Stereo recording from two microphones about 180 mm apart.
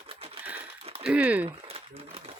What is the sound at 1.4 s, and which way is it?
Crumpling, 30° right (ahead or behind).